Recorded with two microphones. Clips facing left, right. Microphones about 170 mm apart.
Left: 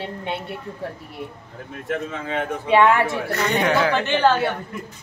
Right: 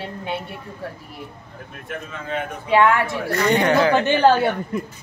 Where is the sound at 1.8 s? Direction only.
90° left.